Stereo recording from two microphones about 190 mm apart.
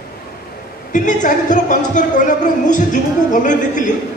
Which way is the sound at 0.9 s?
40° left (ahead or behind).